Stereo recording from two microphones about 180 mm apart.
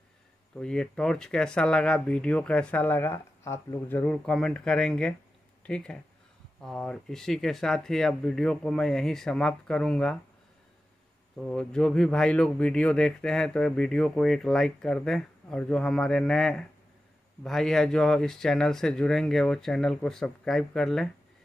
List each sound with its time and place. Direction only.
0.6 s speech: 5° left (ahead or behind)
11.3 s speech: 5° left (ahead or behind)